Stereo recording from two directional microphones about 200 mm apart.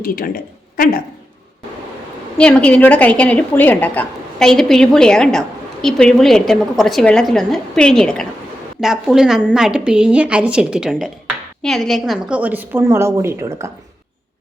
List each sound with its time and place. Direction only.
0.0 s speech: 45° left (ahead or behind)
2.4 s a woman's voice: 5° left (ahead or behind); by 13.7 s 15° right (ahead or behind)